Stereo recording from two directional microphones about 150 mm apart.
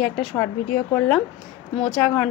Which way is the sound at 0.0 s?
5° left (ahead or behind).